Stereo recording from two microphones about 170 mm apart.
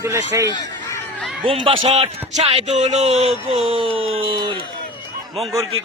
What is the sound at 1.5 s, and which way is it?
A man's voice, 30° right (ahead or behind).